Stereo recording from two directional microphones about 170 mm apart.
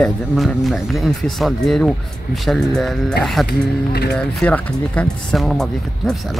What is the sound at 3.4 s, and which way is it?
Speech, 70° left (ahead or behind).